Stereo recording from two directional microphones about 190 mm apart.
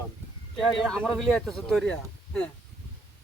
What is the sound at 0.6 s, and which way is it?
Speech, centre (ahead or behind).